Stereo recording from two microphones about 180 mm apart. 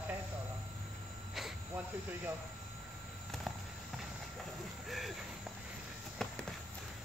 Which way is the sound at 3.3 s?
Centre (ahead or behind).